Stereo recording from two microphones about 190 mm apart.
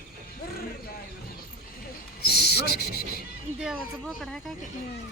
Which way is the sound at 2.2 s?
60° left (ahead or behind).